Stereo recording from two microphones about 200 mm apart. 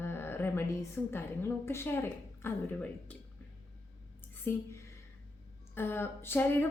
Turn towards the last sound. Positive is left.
turn(degrees=10)  # may be behind; listen again after turning